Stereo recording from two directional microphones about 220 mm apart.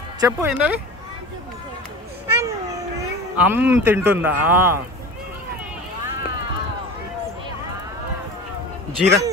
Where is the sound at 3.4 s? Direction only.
10° right (ahead or behind).